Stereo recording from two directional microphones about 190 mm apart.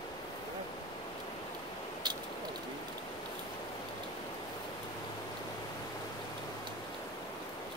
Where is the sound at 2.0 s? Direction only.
25° right (ahead or behind).